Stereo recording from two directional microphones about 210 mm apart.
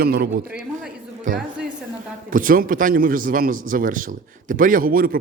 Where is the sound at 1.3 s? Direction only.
35° right (ahead or behind).